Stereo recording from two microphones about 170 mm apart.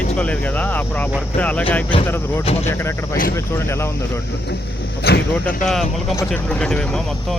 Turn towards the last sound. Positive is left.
turn(degrees=5)  # may be behind; listen again after turning